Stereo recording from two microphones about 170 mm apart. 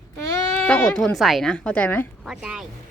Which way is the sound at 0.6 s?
10° left (ahead or behind).